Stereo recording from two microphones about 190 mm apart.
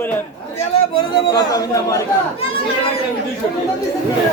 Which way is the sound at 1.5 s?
20° left (ahead or behind).